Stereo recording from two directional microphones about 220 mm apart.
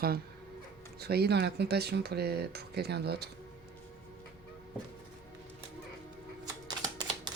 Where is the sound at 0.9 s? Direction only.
45° right (ahead or behind).